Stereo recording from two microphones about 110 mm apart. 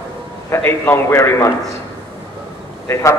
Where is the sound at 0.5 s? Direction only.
20° left (ahead or behind).